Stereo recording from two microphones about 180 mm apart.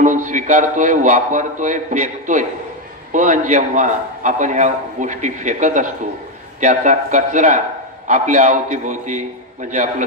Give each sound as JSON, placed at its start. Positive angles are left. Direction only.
{"t": 0.0, "sound": "a man's voice", "side_deg": -45}